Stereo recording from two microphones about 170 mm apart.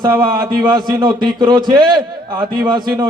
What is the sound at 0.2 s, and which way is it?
A man's voice, 25° right (ahead or behind).